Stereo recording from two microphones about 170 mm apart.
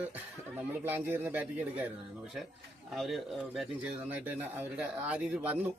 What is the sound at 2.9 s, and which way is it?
Speech, centre (ahead or behind).